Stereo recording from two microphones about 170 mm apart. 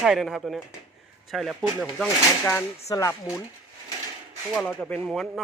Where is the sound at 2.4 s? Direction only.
15° left (ahead or behind).